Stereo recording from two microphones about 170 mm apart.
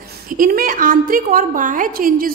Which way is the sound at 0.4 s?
55° right (ahead or behind).